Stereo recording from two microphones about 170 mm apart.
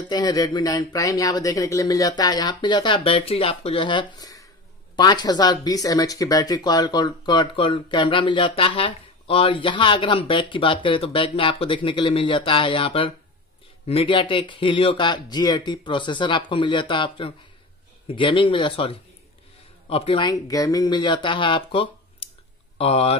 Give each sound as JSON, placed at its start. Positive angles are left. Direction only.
{"t": 0.1, "sound": "speech", "side_deg": 20}